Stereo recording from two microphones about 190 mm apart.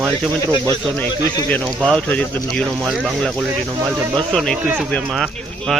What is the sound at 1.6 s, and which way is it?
Speech, 5° right (ahead or behind).